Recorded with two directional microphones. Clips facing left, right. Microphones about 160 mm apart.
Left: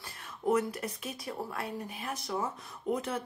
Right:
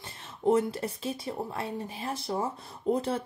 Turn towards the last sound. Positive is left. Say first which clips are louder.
# right 5 dB
turn(degrees=-30)  # may be behind; listen again after turning